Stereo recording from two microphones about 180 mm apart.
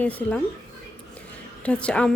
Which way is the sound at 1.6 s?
5° left (ahead or behind).